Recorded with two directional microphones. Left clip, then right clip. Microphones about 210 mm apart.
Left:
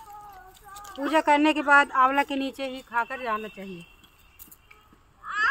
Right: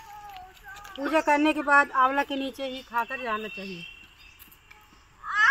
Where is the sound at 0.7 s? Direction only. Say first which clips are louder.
Left 2 dB; 50° left (ahead or behind).